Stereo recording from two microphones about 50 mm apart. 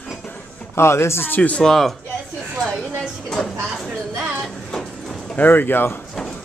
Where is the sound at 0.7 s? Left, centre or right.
Left.